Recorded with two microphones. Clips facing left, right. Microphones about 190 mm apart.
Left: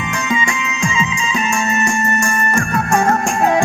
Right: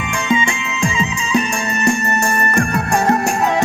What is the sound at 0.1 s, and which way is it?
Music, 30° right (ahead or behind).